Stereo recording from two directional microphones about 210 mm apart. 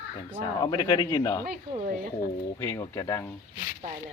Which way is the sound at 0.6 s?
20° left (ahead or behind).